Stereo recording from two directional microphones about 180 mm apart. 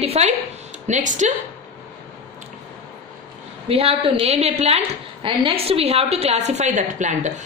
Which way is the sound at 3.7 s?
30° right (ahead or behind).